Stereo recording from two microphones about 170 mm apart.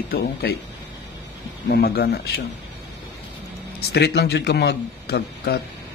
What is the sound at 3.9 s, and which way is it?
A man's voice, 75° left (ahead or behind).